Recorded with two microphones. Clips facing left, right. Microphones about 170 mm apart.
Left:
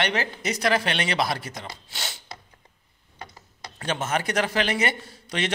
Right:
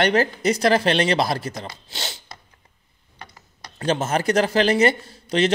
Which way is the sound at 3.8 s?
35° right (ahead or behind).